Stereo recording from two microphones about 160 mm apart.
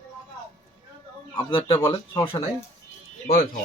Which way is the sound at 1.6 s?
20° left (ahead or behind).